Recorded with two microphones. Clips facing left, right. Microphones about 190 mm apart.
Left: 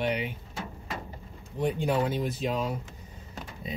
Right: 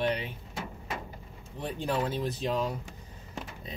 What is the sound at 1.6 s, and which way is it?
Speech, 10° left (ahead or behind).